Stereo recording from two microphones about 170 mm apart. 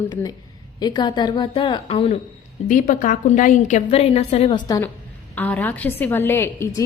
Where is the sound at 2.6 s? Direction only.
50° left (ahead or behind).